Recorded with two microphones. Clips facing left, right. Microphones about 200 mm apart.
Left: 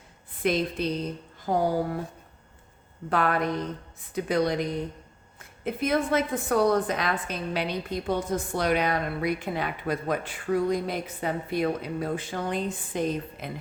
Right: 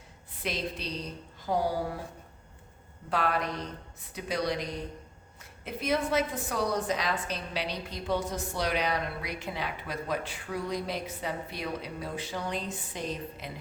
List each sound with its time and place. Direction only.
0.4 s a woman's voice: 50° left (ahead or behind)
3.1 s a woman's voice: 55° left (ahead or behind)